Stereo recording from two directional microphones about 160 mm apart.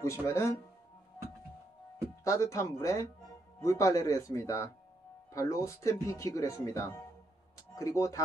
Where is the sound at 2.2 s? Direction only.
20° left (ahead or behind).